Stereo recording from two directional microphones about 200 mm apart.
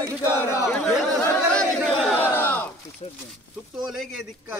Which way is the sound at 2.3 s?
10° left (ahead or behind).